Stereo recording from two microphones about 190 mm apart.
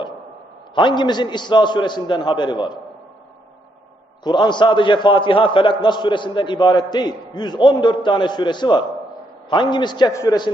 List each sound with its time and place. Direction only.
0.8 s a man's voice: 25° left (ahead or behind)
4.2 s a man's voice: 25° left (ahead or behind)